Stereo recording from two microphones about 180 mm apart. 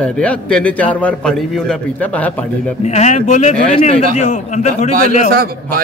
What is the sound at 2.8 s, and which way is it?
Speech, 40° left (ahead or behind).